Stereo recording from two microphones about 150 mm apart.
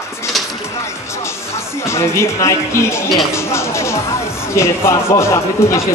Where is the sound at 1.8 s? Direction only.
20° left (ahead or behind).